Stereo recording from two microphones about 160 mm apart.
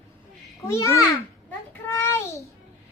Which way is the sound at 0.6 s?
20° left (ahead or behind).